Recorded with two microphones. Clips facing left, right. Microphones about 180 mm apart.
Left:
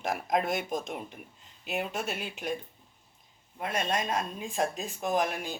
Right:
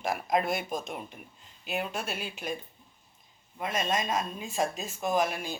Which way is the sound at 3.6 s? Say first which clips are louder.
Even; 10° right (ahead or behind).